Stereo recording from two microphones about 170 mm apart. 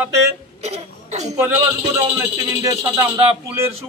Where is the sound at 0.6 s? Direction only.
40° right (ahead or behind).